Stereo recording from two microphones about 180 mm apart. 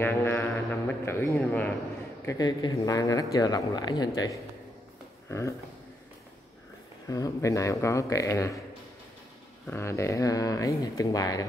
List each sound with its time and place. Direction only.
0.0 s a man's voice: 10° left (ahead or behind)
7.1 s speech: 20° left (ahead or behind)
9.7 s speech: 15° left (ahead or behind)